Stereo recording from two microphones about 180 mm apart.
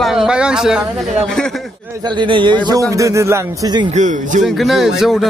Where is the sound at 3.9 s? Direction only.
45° right (ahead or behind).